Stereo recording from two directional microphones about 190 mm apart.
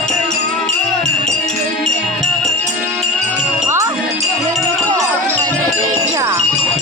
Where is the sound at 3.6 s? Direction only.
15° right (ahead or behind).